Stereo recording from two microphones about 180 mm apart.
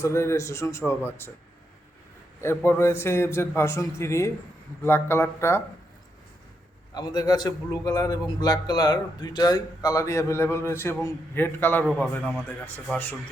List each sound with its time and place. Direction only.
0.0 s a man's voice: 15° left (ahead or behind)
2.4 s a man's voice: 15° left (ahead or behind)
6.9 s a man's voice: 20° left (ahead or behind); by 12.5 s 5° right (ahead or behind)
12.6 s a man's voice: 10° left (ahead or behind)